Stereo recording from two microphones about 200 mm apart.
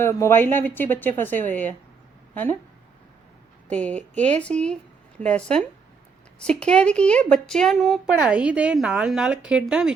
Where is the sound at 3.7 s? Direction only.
5° left (ahead or behind).